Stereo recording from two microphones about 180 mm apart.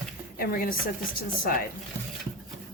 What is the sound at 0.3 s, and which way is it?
Speech, 55° left (ahead or behind).